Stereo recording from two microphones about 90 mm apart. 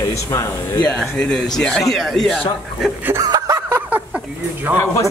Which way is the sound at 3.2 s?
45° right (ahead or behind).